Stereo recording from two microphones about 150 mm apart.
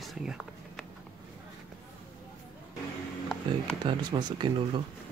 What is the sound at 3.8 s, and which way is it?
Speech, 30° right (ahead or behind).